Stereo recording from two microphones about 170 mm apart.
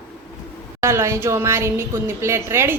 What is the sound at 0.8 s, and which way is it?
A woman's voice, 15° right (ahead or behind).